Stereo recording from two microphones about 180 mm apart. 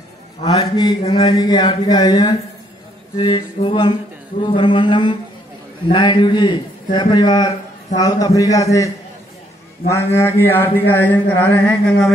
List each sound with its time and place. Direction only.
0.5 s a man's voice: 20° left (ahead or behind)
9.8 s mantra: 15° left (ahead or behind)